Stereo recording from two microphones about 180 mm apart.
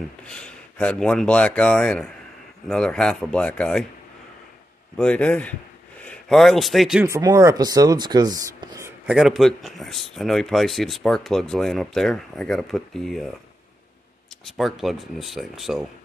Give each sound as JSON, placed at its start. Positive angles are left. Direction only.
{"t": 0.2, "sound": "speech", "side_deg": 5}
{"t": 4.9, "sound": "a man's voice", "side_deg": 5}
{"t": 7.1, "sound": "speech", "side_deg": -20}
{"t": 9.1, "sound": "speech", "side_deg": 0}
{"t": 14.4, "sound": "speech", "side_deg": 0}